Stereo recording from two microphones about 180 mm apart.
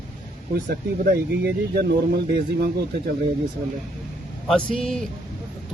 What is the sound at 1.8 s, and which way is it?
Speech, 65° right (ahead or behind).